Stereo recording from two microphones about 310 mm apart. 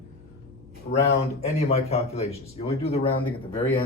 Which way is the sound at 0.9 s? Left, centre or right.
Left.